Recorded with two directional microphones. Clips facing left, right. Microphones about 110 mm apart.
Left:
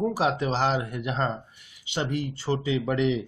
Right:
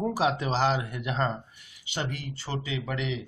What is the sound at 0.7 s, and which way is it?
Speech, 25° left (ahead or behind).